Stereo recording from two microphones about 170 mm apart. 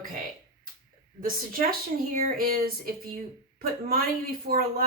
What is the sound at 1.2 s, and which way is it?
Speech, 55° right (ahead or behind).